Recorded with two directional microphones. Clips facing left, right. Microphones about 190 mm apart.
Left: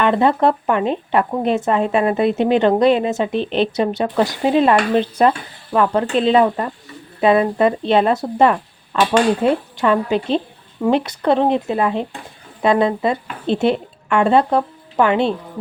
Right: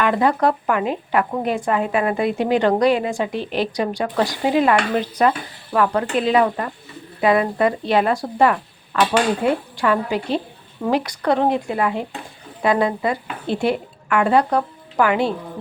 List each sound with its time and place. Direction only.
0.0 s a woman's voice: 25° left (ahead or behind)